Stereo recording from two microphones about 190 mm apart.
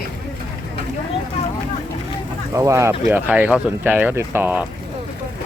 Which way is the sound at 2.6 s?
15° right (ahead or behind).